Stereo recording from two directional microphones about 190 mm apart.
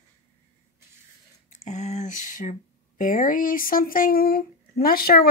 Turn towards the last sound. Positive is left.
turn(degrees=50)  # may be behind; listen again after turning